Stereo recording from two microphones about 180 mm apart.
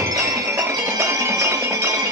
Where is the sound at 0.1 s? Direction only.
20° right (ahead or behind).